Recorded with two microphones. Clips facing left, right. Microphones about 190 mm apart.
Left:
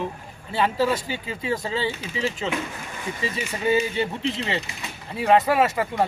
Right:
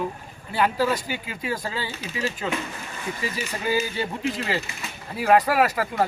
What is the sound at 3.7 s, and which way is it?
Speech, 25° left (ahead or behind).